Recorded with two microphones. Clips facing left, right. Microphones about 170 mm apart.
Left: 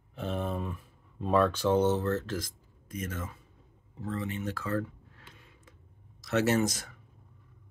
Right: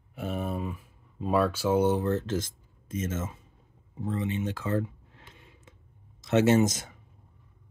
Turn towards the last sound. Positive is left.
turn(degrees=-20)  # may be behind; listen again after turning